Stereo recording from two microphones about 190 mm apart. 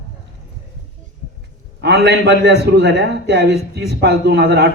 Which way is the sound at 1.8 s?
60° right (ahead or behind).